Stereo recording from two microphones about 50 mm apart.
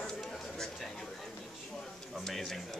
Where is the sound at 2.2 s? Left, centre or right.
Centre.